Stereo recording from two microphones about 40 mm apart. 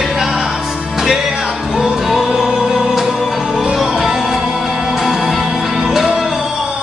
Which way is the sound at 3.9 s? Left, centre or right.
Centre.